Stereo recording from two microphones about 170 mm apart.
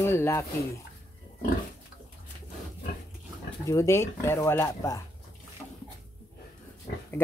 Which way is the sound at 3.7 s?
15° left (ahead or behind).